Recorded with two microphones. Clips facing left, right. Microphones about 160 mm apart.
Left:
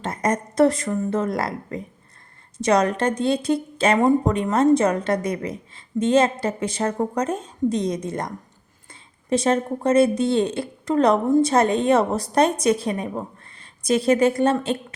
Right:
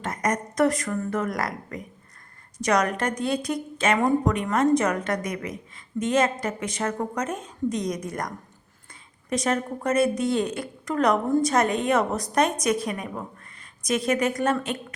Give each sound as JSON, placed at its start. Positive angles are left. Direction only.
{"t": 0.0, "sound": "a woman's voice", "side_deg": 30}
{"t": 9.3, "sound": "a woman's voice", "side_deg": 30}